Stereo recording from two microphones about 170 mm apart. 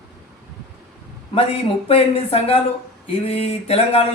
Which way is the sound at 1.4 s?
35° left (ahead or behind).